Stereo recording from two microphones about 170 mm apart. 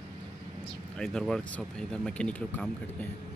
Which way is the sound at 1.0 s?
5° left (ahead or behind).